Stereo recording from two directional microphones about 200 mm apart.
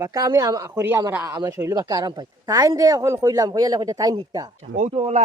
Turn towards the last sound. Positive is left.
turn(degrees=-35)  # may be behind; listen again after turning